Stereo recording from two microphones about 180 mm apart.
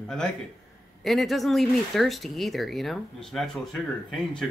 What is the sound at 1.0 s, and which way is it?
Speech, centre (ahead or behind).